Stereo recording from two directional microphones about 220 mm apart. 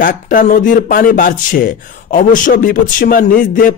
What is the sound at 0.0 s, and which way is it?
Speech, 40° left (ahead or behind).